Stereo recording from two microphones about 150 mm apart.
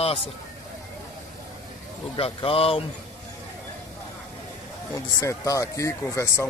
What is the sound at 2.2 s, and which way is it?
Speech, 40° left (ahead or behind).